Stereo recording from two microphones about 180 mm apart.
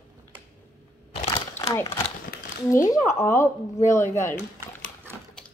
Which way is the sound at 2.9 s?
15° left (ahead or behind).